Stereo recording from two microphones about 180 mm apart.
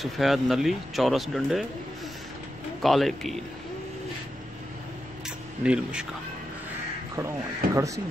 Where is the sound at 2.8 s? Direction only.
Centre (ahead or behind).